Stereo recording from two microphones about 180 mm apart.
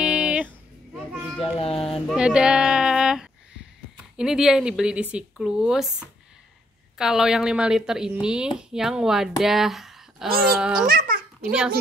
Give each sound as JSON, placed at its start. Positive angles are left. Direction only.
{"t": 0.0, "sound": "music", "side_deg": -5}
{"t": 0.9, "sound": "children playing", "side_deg": -5}
{"t": 1.4, "sound": "child singing", "side_deg": 30}
{"t": 2.0, "sound": "a sound", "side_deg": -5}
{"t": 4.2, "sound": "speech", "side_deg": -5}
{"t": 10.9, "sound": "babbling", "side_deg": -50}